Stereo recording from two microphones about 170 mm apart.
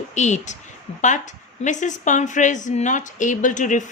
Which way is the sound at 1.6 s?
45° left (ahead or behind).